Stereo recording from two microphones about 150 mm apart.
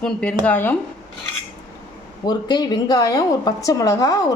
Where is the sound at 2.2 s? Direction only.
30° left (ahead or behind).